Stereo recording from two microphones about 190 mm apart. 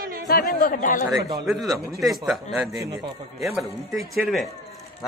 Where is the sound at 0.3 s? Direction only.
50° left (ahead or behind).